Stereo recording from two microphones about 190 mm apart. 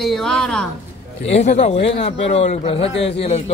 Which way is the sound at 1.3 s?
35° left (ahead or behind).